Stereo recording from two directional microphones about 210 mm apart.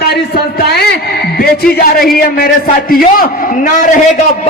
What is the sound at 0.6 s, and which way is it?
Speech, 50° left (ahead or behind).